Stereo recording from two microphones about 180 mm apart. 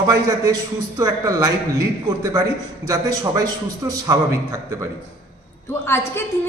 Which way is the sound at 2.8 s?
20° right (ahead or behind).